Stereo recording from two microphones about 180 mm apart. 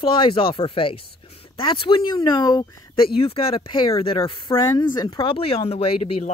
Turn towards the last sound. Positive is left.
turn(degrees=30)  # may be behind; listen again after turning